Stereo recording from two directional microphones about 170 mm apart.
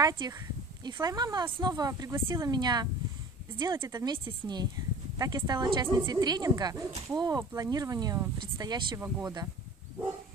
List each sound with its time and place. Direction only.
0.0 s speech: 20° right (ahead or behind)